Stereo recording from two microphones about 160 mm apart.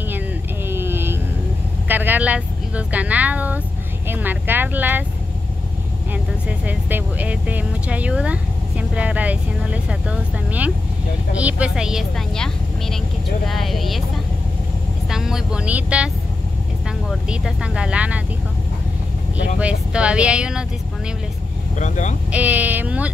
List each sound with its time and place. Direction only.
0.7 s a sound: 15° right (ahead or behind)
1.9 s speech: 10° right (ahead or behind)
6.1 s a woman's voice: 10° right (ahead or behind)
17.1 s speech: 5° right (ahead or behind)
19.6 s speech: 5° right (ahead or behind)
21.7 s speech: 50° left (ahead or behind)
22.3 s speech: 10° right (ahead or behind)